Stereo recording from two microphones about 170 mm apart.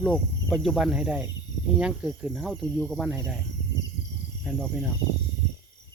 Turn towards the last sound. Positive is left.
turn(degrees=0)  # may be behind; listen again after turning